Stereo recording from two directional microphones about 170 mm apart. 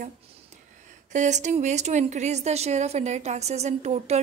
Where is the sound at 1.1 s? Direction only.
45° right (ahead or behind).